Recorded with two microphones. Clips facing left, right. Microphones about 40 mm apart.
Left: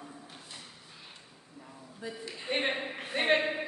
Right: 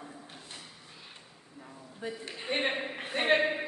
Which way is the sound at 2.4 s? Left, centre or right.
Centre.